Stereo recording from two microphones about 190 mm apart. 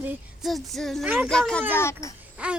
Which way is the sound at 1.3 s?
5° left (ahead or behind).